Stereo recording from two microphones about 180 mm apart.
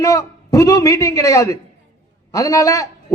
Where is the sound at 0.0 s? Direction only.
20° left (ahead or behind).